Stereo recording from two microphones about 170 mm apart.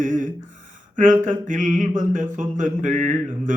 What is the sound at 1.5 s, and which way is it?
Speech, 50° right (ahead or behind).